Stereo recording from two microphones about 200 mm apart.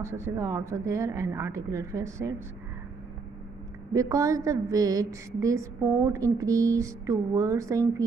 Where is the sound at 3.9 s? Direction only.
15° right (ahead or behind).